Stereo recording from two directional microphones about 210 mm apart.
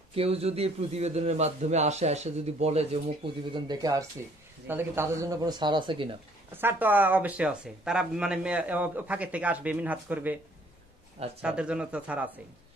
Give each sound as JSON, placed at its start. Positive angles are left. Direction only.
{"t": 0.1, "sound": "a man's voice", "side_deg": -30}
{"t": 3.5, "sound": "speech", "side_deg": -20}
{"t": 6.5, "sound": "speech", "side_deg": -10}
{"t": 11.4, "sound": "speech", "side_deg": -5}